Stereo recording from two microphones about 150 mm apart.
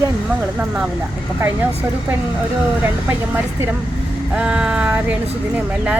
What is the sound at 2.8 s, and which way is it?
Speech, 15° right (ahead or behind).